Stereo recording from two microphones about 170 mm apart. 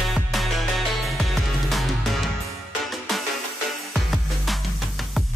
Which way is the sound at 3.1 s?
Centre (ahead or behind).